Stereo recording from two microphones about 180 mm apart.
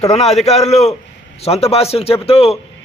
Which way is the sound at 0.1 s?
35° left (ahead or behind).